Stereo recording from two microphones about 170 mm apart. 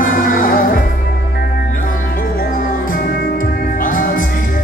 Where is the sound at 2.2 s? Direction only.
55° left (ahead or behind).